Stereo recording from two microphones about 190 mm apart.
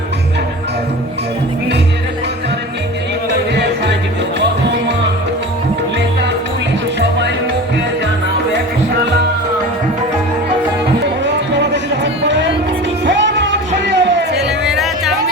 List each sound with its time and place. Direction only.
11.5 s music: 65° right (ahead or behind)
14.4 s music: 5° right (ahead or behind)